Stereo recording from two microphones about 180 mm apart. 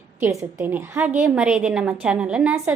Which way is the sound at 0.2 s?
15° right (ahead or behind).